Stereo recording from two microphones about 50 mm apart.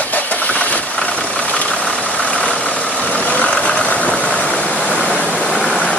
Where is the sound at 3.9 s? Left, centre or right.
Left.